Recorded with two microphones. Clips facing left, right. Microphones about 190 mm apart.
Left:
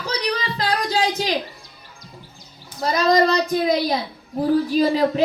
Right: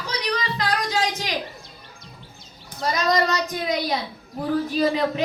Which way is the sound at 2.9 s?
35° left (ahead or behind).